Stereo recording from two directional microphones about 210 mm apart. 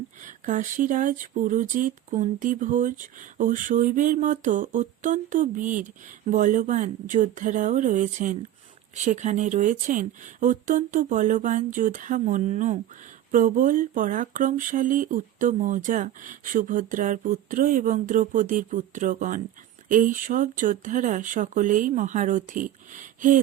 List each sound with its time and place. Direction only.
0.2 s speech: 40° right (ahead or behind)